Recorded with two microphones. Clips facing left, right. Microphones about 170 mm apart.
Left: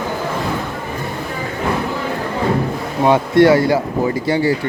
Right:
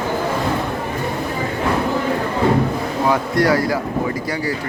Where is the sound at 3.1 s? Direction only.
25° left (ahead or behind).